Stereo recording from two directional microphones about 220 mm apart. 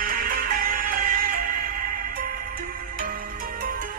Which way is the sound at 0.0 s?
40° right (ahead or behind).